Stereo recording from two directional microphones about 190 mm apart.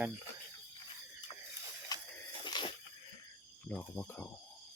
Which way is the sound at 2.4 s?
25° left (ahead or behind).